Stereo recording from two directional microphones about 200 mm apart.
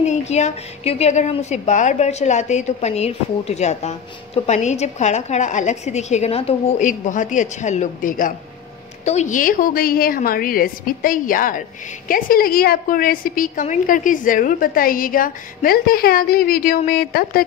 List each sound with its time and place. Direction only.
0.0 s a woman's voice: 35° left (ahead or behind); by 17.5 s 50° left (ahead or behind)